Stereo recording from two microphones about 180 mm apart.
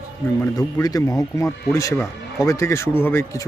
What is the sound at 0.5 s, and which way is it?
Speech, 20° left (ahead or behind).